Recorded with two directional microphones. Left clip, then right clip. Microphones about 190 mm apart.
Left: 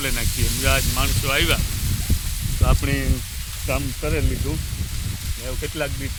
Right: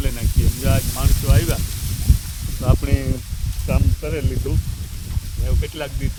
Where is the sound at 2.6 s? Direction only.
60° right (ahead or behind).